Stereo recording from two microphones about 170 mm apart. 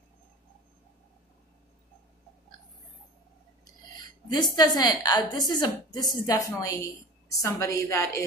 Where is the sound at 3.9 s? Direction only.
25° left (ahead or behind).